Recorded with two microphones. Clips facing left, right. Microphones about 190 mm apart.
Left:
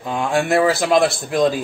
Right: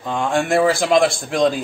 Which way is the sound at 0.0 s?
5° left (ahead or behind).